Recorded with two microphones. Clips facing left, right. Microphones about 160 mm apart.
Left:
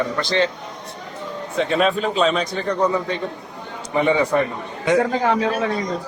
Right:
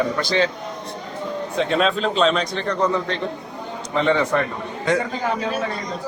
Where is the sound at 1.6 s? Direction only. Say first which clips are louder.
Left 1 dB; 5° left (ahead or behind).